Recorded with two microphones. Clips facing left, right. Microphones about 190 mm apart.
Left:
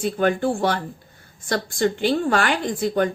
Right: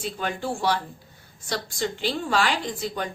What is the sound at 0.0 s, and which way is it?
A woman's voice, 55° left (ahead or behind).